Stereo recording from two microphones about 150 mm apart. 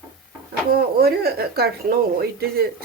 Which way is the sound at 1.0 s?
90° right.